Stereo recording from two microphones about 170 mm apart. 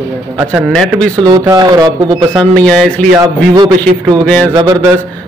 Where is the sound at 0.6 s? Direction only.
5° left (ahead or behind).